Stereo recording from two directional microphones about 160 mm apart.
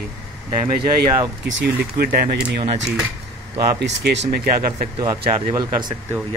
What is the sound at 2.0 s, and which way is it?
Speech, 70° right (ahead or behind).